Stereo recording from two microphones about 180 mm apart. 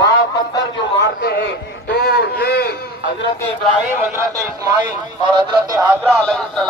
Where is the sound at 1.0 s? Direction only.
70° left (ahead or behind).